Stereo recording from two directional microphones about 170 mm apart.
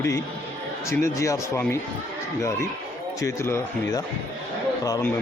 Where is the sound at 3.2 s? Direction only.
15° left (ahead or behind).